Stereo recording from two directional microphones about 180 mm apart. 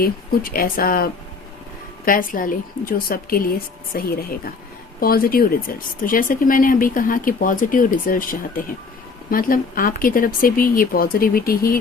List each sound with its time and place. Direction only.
0.0 s speech: 55° left (ahead or behind)